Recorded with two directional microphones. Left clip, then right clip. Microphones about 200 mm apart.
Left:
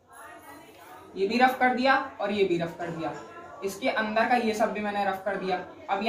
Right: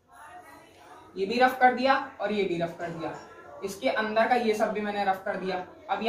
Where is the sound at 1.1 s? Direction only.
10° right (ahead or behind).